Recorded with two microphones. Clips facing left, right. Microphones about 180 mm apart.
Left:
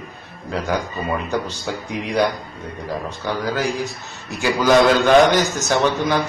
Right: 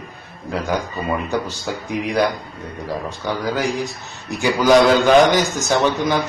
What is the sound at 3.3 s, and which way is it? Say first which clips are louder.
A man's voice: right 1 dB; centre (ahead or behind).